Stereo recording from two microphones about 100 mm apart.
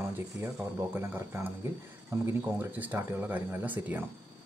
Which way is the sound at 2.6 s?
15° right (ahead or behind).